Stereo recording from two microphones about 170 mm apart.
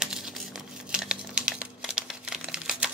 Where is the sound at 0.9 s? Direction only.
5° right (ahead or behind).